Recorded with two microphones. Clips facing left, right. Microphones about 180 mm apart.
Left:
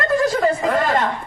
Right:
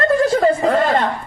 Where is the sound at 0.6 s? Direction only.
30° right (ahead or behind).